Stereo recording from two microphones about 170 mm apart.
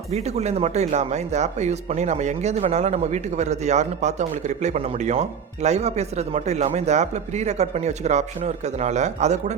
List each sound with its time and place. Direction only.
0.1 s speech: 40° right (ahead or behind)